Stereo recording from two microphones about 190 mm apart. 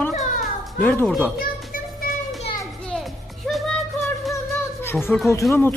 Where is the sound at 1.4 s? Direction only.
50° left (ahead or behind).